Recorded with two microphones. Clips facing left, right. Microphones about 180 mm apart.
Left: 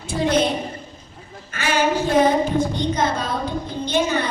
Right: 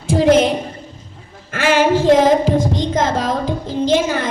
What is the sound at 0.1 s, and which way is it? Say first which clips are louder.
Child singing: right 7 dB; 90° right.